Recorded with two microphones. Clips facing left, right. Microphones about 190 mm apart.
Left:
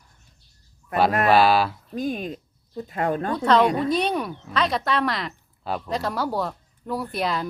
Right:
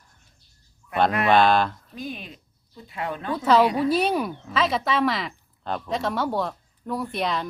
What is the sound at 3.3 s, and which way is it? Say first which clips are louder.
A woman's voice: right 1 dB; 5° right (ahead or behind).